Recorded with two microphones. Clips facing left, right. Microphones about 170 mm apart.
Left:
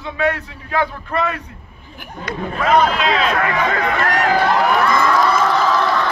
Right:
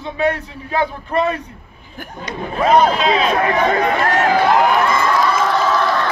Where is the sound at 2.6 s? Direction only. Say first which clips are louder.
Right 2 dB; 30° right (ahead or behind).